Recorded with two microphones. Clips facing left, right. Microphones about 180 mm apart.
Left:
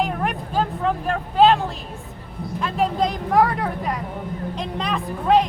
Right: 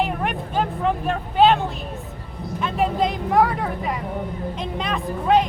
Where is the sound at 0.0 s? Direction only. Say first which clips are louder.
Even; centre (ahead or behind).